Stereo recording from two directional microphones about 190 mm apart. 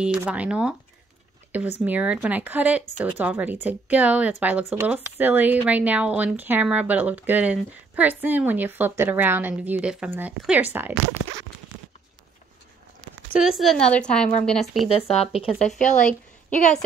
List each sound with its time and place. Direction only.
0.0 s speech: 5° right (ahead or behind)
13.3 s speech: 5° right (ahead or behind)
14.9 s speech: 30° left (ahead or behind)
15.8 s speech: 40° left (ahead or behind)